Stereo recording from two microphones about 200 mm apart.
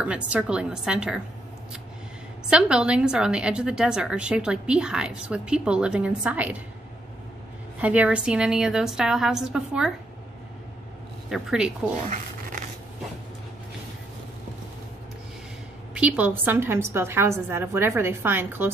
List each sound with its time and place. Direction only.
0.0 s a woman's voice: 5° right (ahead or behind)
2.5 s a woman's voice: 5° right (ahead or behind)
7.8 s a woman's voice: 5° right (ahead or behind)
11.2 s a woman's voice: 5° right (ahead or behind)
12.1 s rub: 40° right (ahead or behind)
15.9 s a woman's voice: 5° right (ahead or behind)